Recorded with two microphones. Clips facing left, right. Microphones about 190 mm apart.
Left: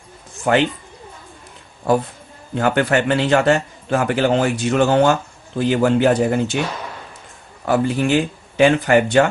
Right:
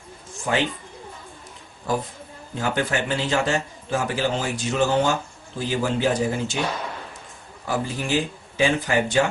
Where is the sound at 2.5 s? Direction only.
65° left (ahead or behind).